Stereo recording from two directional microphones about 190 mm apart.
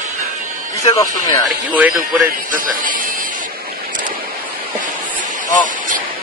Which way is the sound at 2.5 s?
45° right (ahead or behind).